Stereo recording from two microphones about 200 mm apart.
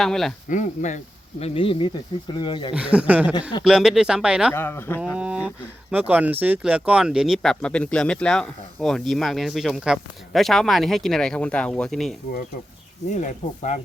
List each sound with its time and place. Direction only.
0.0 s speech: centre (ahead or behind)
0.4 s speech: 40° left (ahead or behind); by 2.7 s 25° left (ahead or behind)
2.7 s speech: 5° right (ahead or behind)
4.5 s speech: 10° left (ahead or behind)
5.1 s speech: 5° right (ahead or behind)
13.1 s speech: 35° left (ahead or behind)